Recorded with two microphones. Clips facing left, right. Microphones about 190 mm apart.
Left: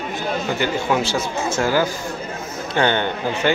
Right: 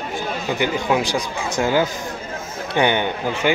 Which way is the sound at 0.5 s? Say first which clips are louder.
Right 2 dB; 15° right (ahead or behind).